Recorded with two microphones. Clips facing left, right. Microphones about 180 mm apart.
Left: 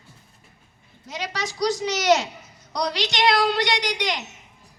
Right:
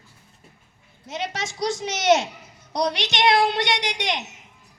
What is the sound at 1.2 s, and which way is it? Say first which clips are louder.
A woman's voice: left 1 dB; 25° right (ahead or behind).